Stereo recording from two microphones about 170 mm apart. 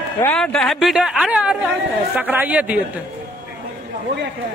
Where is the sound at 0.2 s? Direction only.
5° left (ahead or behind).